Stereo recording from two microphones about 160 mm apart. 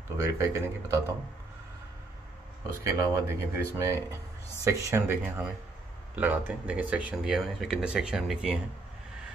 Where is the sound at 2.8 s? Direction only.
20° right (ahead or behind).